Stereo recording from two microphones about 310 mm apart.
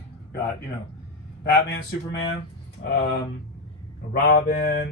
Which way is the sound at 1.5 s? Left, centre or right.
Left.